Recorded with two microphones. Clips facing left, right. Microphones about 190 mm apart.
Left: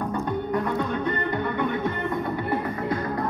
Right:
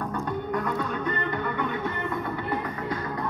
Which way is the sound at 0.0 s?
20° left (ahead or behind).